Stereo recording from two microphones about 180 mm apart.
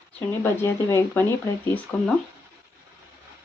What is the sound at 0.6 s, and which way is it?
Speech, 15° left (ahead or behind).